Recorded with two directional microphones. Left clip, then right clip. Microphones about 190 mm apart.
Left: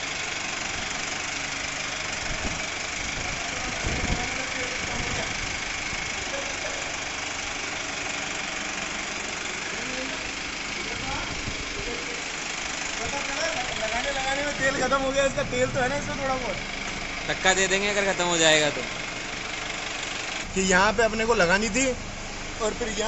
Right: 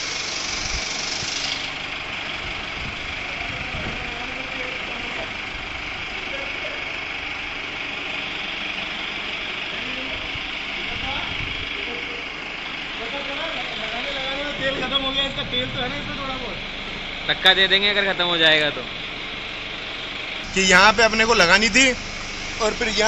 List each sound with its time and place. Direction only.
17.3 s speech: 15° left (ahead or behind)
20.5 s speech: 5° left (ahead or behind)